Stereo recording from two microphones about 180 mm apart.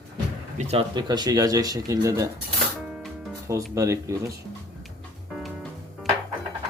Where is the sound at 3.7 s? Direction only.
15° right (ahead or behind).